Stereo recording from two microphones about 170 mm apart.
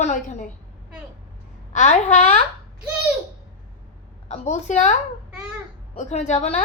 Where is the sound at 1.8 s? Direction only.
45° left (ahead or behind).